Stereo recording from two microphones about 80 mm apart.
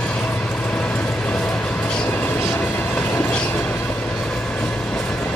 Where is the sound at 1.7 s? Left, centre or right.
Centre.